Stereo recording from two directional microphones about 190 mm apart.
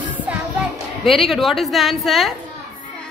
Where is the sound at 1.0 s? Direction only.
Centre (ahead or behind).